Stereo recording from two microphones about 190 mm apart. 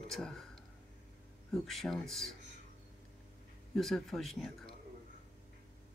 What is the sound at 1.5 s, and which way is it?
Speech, centre (ahead or behind).